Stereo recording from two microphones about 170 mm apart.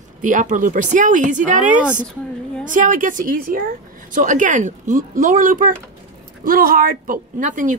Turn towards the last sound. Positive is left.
turn(degrees=-50)  # may be behind; listen again after turning